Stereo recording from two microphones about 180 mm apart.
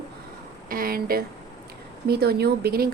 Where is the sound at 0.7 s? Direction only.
50° right (ahead or behind).